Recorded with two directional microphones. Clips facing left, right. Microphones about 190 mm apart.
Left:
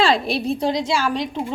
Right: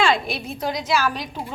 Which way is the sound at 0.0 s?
35° left (ahead or behind).